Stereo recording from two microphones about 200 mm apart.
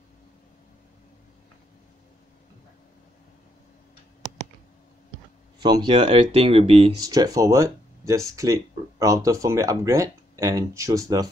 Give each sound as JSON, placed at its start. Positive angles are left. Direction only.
{"t": 5.6, "sound": "speech", "side_deg": -20}
{"t": 7.1, "sound": "speech", "side_deg": -20}